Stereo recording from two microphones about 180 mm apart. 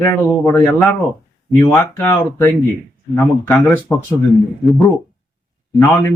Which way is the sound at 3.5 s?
5° left (ahead or behind).